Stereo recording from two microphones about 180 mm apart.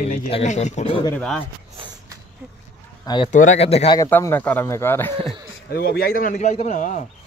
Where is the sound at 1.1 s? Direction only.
5° left (ahead or behind).